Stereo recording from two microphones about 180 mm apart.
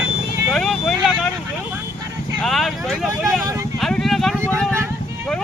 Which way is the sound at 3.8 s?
Centre (ahead or behind).